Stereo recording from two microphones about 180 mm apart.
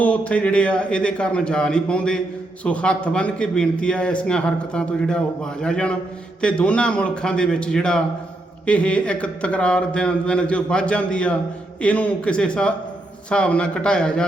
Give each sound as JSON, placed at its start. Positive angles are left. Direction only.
{"t": 0.0, "sound": "a man's voice", "side_deg": 5}